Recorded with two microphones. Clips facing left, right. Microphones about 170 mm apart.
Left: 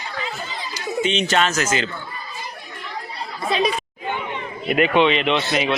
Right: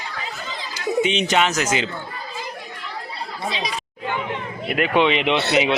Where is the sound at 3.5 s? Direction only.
55° left (ahead or behind).